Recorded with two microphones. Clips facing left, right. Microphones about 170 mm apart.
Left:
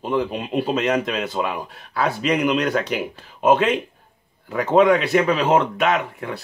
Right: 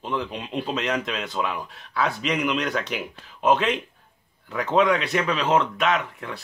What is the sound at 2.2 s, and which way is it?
Speech, 45° left (ahead or behind).